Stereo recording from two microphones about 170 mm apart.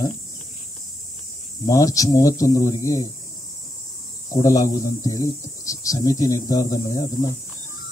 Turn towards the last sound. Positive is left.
turn(degrees=20)  # may be behind; listen again after turning